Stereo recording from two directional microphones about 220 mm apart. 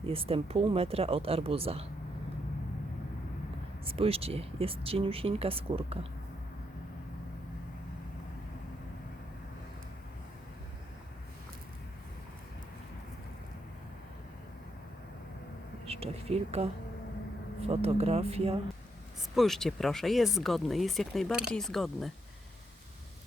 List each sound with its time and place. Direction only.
0.0 s speech: 25° right (ahead or behind)
3.8 s speech: 25° right (ahead or behind)
15.9 s speech: 25° right (ahead or behind)
19.4 s speech: centre (ahead or behind)